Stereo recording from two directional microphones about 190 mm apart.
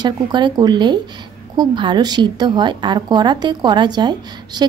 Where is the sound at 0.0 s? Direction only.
25° right (ahead or behind).